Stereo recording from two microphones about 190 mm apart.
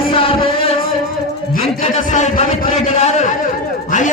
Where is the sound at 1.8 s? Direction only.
35° left (ahead or behind).